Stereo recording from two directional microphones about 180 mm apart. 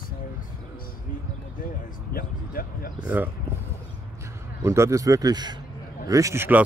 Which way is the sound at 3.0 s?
10° right (ahead or behind).